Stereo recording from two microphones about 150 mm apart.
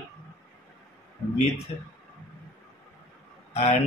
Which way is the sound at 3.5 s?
45° left (ahead or behind).